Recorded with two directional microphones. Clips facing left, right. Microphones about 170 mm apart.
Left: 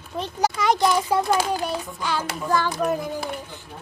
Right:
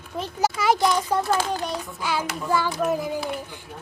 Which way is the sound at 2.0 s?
10° right (ahead or behind).